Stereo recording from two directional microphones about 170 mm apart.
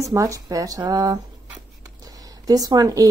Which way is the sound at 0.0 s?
20° right (ahead or behind).